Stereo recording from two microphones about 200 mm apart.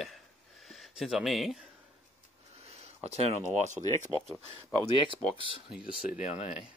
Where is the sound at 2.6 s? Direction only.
30° right (ahead or behind).